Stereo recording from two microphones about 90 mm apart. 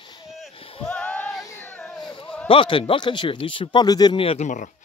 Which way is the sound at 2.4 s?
75° left (ahead or behind).